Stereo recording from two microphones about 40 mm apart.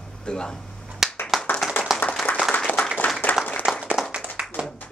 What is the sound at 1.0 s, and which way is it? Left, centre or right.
Clapping, centre.